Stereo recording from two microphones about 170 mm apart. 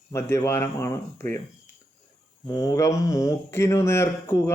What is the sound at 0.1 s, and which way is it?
Speech, 15° left (ahead or behind).